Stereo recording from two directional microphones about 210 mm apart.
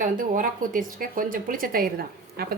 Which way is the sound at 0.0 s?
40° right (ahead or behind).